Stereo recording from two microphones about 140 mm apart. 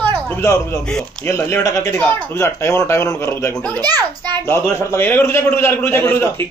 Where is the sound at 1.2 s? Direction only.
20° left (ahead or behind).